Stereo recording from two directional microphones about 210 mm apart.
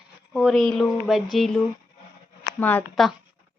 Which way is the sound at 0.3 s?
Centre (ahead or behind).